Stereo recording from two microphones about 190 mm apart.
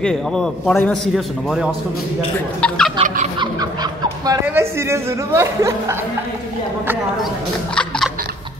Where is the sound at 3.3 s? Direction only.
20° right (ahead or behind).